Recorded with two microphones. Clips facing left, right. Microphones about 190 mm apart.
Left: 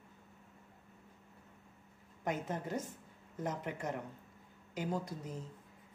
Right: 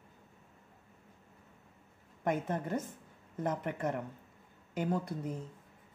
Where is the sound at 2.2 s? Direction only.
55° right (ahead or behind).